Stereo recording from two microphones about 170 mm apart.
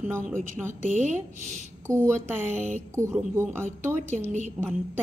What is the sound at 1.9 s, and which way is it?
Speech, 15° right (ahead or behind).